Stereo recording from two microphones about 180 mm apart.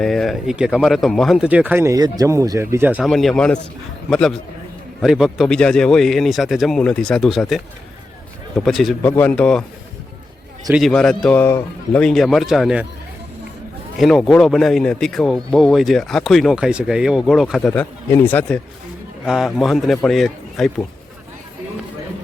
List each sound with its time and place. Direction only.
0.0 s speech: centre (ahead or behind)
3.1 s speech: centre (ahead or behind)
10.7 s speech: centre (ahead or behind)
14.0 s speech: centre (ahead or behind)
17.7 s speech: 10° left (ahead or behind)